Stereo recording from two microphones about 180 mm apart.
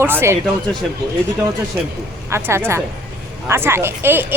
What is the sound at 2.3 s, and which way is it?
Speech, 15° right (ahead or behind).